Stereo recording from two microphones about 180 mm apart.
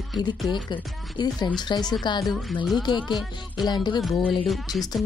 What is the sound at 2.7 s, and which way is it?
Speech, 25° left (ahead or behind).